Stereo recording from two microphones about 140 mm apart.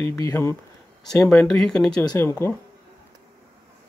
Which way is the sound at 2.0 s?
25° left (ahead or behind).